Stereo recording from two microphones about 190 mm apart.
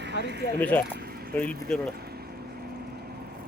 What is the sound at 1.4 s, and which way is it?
Speech, 5° left (ahead or behind).